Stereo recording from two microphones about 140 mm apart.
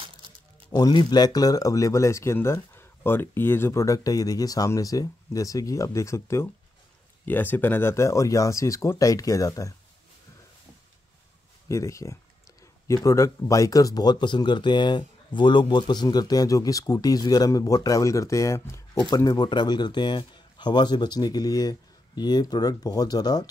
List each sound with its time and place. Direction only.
0.7 s speech: 30° left (ahead or behind)
11.7 s speech: 20° left (ahead or behind)